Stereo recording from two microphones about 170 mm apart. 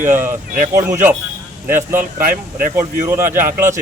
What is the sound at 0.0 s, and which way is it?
Speech, 15° right (ahead or behind).